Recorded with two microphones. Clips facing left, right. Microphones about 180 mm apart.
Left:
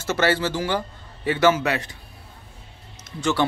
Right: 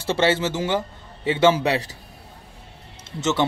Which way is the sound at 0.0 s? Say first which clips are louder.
Right 1 dB; 30° right (ahead or behind).